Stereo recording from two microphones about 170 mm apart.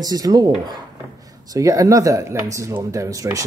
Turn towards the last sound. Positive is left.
turn(degrees=-20)  # may be behind; listen again after turning